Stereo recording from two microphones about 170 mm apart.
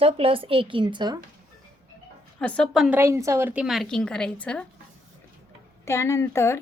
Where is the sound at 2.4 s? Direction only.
5° left (ahead or behind).